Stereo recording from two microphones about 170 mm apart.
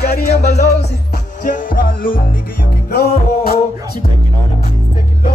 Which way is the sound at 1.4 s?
50° left (ahead or behind).